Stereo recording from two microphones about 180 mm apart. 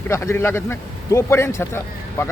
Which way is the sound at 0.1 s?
15° left (ahead or behind).